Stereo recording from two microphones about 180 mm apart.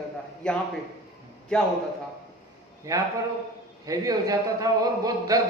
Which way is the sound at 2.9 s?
20° right (ahead or behind).